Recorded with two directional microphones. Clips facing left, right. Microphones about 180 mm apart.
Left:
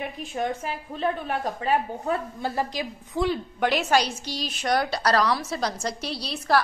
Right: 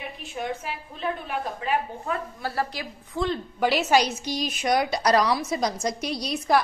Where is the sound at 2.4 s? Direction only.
20° left (ahead or behind).